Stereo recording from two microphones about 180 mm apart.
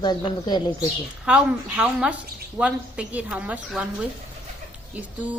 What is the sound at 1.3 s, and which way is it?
A woman's voice, 5° right (ahead or behind).